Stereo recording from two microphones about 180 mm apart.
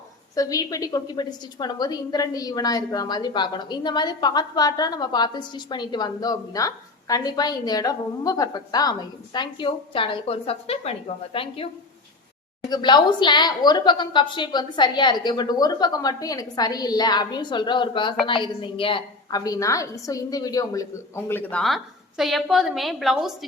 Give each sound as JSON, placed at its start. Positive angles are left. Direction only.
{"t": 0.3, "sound": "a woman's voice", "side_deg": 20}